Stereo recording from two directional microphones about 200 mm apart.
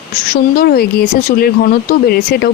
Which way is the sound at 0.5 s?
50° left (ahead or behind).